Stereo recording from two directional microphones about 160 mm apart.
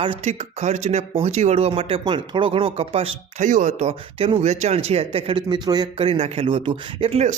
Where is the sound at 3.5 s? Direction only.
50° right (ahead or behind).